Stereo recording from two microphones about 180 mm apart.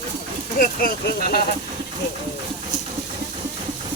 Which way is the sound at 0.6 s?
55° left (ahead or behind).